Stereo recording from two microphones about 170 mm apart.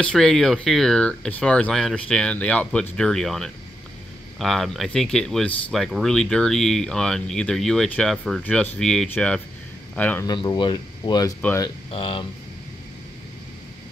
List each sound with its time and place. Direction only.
0.0 s speech: 5° left (ahead or behind)
10.2 s speech: 25° left (ahead or behind)
11.9 s speech: 30° left (ahead or behind)